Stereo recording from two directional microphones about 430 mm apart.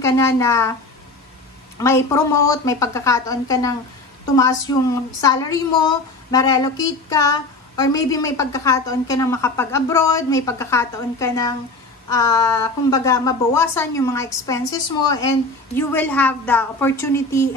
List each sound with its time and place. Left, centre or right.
0.0 s a woman's voice: centre
1.8 s a woman's voice: centre